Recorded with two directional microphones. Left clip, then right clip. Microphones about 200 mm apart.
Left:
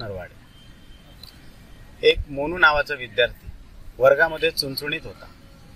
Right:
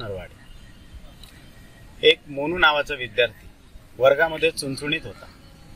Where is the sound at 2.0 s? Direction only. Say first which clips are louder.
Right 1 dB; 5° right (ahead or behind).